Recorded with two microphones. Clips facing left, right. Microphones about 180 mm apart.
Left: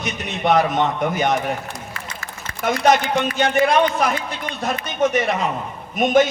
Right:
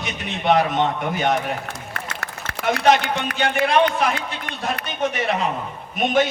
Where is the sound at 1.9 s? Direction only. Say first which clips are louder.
Right 2 dB; 65° right (ahead or behind).